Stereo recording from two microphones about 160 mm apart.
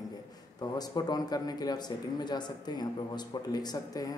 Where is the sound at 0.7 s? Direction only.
25° left (ahead or behind).